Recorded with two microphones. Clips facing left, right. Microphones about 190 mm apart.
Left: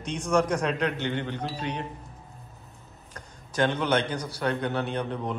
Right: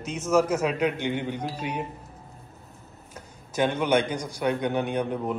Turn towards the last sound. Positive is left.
turn(degrees=-10)  # may be behind; listen again after turning